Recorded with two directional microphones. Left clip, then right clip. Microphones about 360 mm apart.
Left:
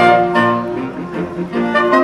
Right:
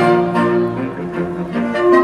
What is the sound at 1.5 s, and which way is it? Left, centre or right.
Music, centre.